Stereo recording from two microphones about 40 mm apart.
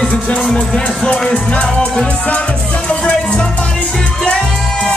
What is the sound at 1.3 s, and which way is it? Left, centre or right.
Music, left.